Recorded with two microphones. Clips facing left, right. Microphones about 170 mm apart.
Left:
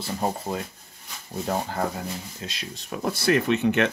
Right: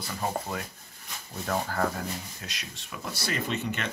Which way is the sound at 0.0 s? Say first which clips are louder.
Left 4 dB; 25° left (ahead or behind).